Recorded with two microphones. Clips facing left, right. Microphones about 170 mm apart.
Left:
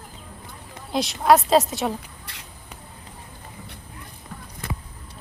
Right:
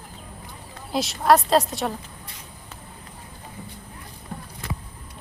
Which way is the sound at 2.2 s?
75° left (ahead or behind).